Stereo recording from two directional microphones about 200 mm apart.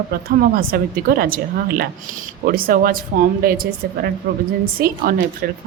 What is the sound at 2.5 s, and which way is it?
A woman's voice, 45° right (ahead or behind).